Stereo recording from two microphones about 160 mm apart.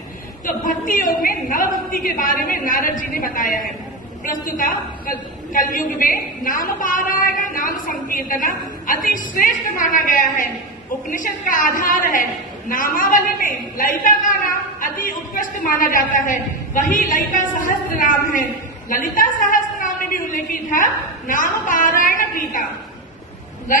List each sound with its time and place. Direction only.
0.5 s a woman's voice: 60° left (ahead or behind)
18.9 s a sound: 55° left (ahead or behind)
21.3 s a woman's voice: 55° left (ahead or behind)